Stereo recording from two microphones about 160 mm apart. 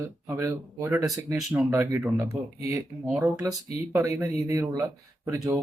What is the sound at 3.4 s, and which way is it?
Speech, 20° right (ahead or behind).